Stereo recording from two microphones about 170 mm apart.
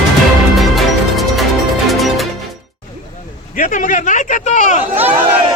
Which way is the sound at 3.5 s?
50° left (ahead or behind).